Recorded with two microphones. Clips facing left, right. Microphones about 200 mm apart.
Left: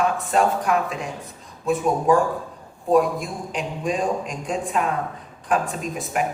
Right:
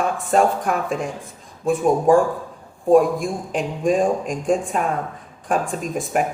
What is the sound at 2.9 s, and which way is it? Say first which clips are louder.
Speech: right 4 dB; 50° right (ahead or behind).